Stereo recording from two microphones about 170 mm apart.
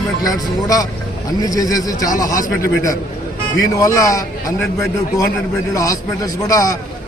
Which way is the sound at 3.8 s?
20° left (ahead or behind).